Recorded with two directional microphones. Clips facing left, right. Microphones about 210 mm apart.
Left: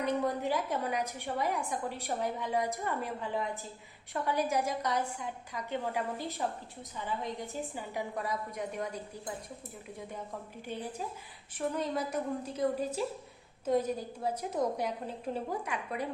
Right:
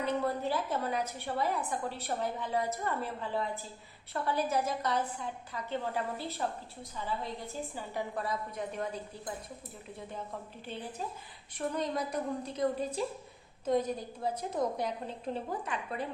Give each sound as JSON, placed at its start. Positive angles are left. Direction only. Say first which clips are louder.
{"t": 0.0, "sound": "a woman's voice", "louder": "left 1 dB", "side_deg": 15}
{"t": 11.5, "sound": "a woman's voice", "louder": "even", "side_deg": 5}